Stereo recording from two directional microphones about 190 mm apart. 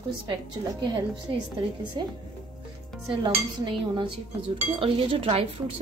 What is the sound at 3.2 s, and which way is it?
Dishes, 25° right (ahead or behind).